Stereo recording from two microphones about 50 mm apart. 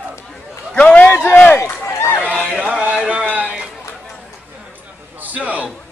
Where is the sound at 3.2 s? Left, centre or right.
Right.